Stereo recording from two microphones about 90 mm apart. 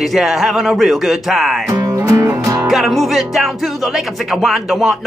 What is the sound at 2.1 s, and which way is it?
Music, 35° right (ahead or behind).